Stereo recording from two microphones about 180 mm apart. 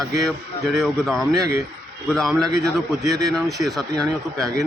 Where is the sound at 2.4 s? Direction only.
20° right (ahead or behind).